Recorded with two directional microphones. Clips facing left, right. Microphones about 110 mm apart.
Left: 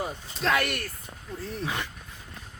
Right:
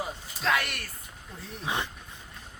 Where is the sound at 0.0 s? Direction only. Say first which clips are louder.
Left 2 dB; centre (ahead or behind).